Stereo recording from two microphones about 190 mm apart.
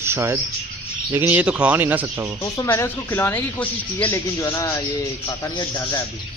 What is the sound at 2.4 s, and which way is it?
Speech, 15° left (ahead or behind).